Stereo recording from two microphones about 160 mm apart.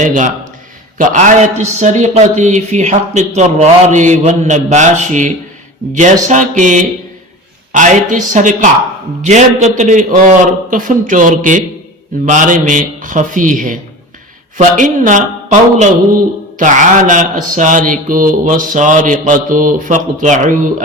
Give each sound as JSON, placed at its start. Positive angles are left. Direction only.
{"t": 0.0, "sound": "a man's voice", "side_deg": -50}